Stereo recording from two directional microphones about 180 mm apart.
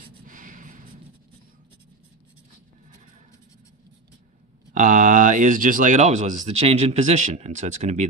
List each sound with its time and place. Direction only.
0.3 s snort: 50° right (ahead or behind)
4.7 s speech: 45° right (ahead or behind)